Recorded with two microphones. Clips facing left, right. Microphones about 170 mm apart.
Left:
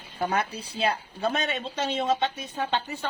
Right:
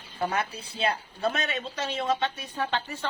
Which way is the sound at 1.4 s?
25° left (ahead or behind).